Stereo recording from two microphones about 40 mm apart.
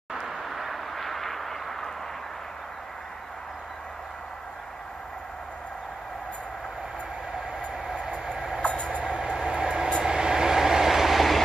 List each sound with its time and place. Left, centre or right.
0.1 s a sound: centre
8.6 s train: left
9.2 s train: right; by 11.4 s centre